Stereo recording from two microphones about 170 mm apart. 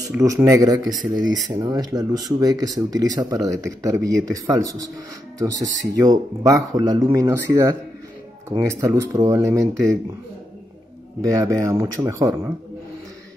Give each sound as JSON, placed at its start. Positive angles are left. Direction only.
{"t": 0.1, "sound": "speech", "side_deg": -15}
{"t": 1.0, "sound": "speech", "side_deg": 0}
{"t": 1.5, "sound": "speech", "side_deg": -25}
{"t": 11.1, "sound": "speech", "side_deg": -20}